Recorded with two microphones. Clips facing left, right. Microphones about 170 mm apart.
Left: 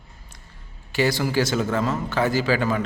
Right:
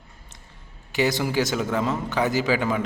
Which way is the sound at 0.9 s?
20° right (ahead or behind).